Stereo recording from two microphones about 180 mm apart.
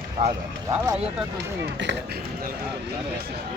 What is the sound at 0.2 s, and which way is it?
Speech, 25° right (ahead or behind).